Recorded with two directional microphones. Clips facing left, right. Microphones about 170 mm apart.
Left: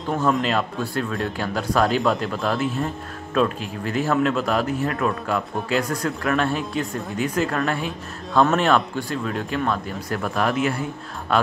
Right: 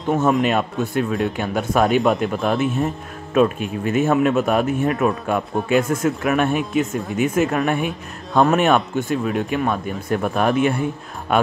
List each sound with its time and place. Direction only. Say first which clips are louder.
0.2 s speech: right 1 dB; 20° right (ahead or behind)